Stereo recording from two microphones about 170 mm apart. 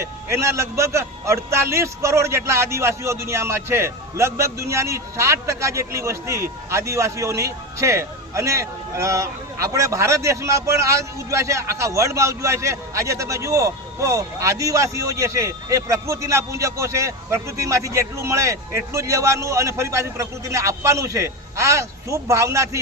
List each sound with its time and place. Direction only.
0.0 s a man's voice: 15° right (ahead or behind)